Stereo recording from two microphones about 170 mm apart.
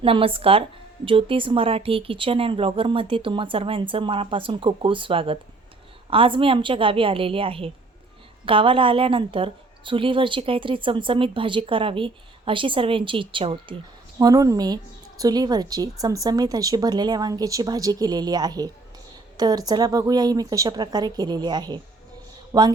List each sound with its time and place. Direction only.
0.0 s a woman's voice: 30° right (ahead or behind)
14.2 s a woman's voice: 20° right (ahead or behind)